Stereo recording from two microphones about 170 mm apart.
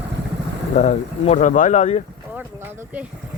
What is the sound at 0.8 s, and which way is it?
Speech, 40° left (ahead or behind).